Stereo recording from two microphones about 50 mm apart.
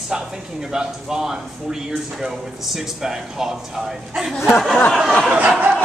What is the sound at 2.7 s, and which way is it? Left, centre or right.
Speech, centre.